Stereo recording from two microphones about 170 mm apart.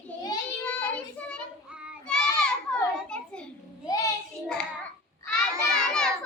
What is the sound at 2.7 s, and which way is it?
Children playing, 5° left (ahead or behind).